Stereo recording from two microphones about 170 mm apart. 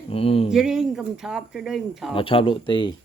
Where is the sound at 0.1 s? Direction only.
35° left (ahead or behind).